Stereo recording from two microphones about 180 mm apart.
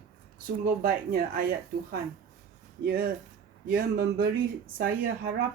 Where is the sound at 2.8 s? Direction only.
55° right (ahead or behind).